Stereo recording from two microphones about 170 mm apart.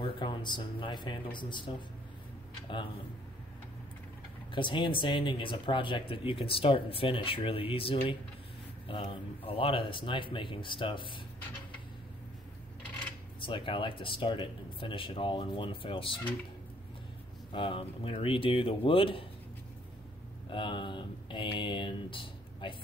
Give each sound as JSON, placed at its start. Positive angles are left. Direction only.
{"t": 0.0, "sound": "speech", "side_deg": 30}
{"t": 4.5, "sound": "speech", "side_deg": 30}
{"t": 13.4, "sound": "speech", "side_deg": 30}
{"t": 17.5, "sound": "speech", "side_deg": 30}
{"t": 20.4, "sound": "speech", "side_deg": 30}